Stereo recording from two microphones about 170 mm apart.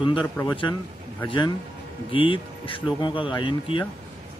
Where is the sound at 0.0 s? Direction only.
30° left (ahead or behind).